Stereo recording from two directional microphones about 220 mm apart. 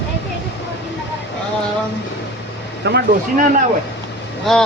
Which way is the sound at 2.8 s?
50° right (ahead or behind).